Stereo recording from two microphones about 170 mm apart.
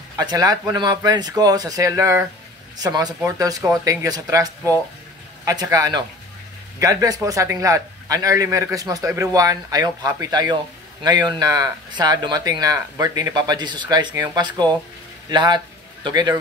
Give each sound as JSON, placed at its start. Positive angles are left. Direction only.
{"t": 0.2, "sound": "a man's voice", "side_deg": -25}